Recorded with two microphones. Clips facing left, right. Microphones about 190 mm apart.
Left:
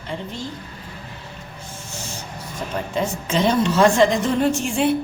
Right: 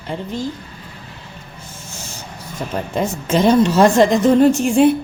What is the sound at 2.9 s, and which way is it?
A woman's voice, 45° right (ahead or behind).